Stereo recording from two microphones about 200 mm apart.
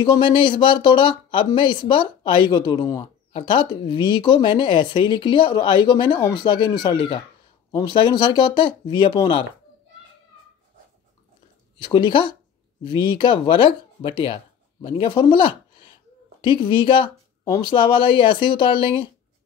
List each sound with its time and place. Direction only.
0.0 s speech: 25° left (ahead or behind)
11.8 s speech: 25° left (ahead or behind)
16.5 s speech: 25° left (ahead or behind)